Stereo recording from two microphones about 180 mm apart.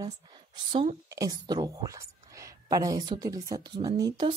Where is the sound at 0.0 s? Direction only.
25° right (ahead or behind).